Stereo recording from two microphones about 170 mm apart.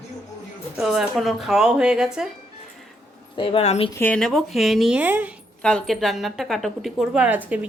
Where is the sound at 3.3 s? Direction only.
35° left (ahead or behind).